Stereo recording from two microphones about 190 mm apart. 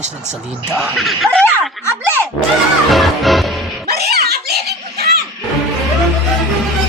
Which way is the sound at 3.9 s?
55° right (ahead or behind).